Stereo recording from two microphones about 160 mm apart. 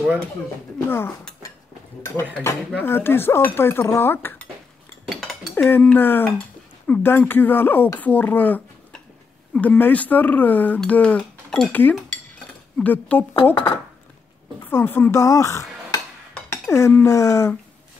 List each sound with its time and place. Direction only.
0.8 s speech: 15° left (ahead or behind)
2.8 s speech: 15° left (ahead or behind)
5.0 s dishes: centre (ahead or behind)
5.6 s speech: 10° left (ahead or behind)
14.7 s dishes: 15° left (ahead or behind)
16.4 s speech: 15° left (ahead or behind)